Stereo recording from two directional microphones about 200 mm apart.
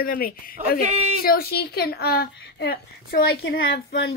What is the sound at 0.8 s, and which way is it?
Speech, 30° right (ahead or behind).